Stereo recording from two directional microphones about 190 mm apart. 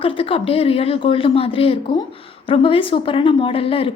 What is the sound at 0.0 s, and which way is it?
A woman's voice, 30° left (ahead or behind).